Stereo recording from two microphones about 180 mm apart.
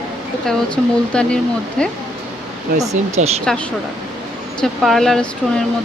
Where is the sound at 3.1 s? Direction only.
35° right (ahead or behind).